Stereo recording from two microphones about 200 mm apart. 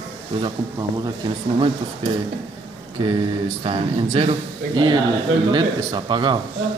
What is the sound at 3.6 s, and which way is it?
A man's voice, 25° right (ahead or behind).